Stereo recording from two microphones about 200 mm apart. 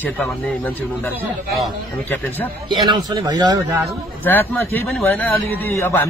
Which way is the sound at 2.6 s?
20° right (ahead or behind).